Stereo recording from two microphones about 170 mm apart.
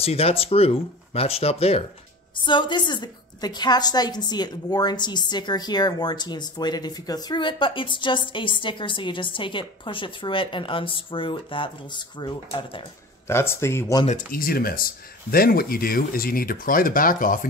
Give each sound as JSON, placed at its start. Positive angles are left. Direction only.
{"t": 0.0, "sound": "a woman's voice", "side_deg": 35}
{"t": 13.3, "sound": "speech", "side_deg": 15}
{"t": 14.0, "sound": "speech", "side_deg": 55}